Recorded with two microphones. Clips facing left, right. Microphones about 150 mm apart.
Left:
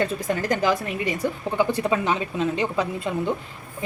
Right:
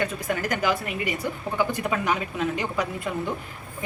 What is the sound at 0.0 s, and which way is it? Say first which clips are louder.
A woman's voice: left 3 dB; 30° left (ahead or behind).